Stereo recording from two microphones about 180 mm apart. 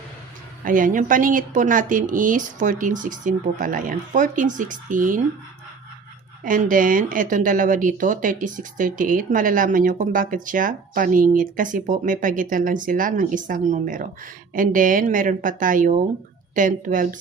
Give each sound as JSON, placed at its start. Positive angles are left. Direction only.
{"t": 0.6, "sound": "speech", "side_deg": -50}
{"t": 6.4, "sound": "speech", "side_deg": -50}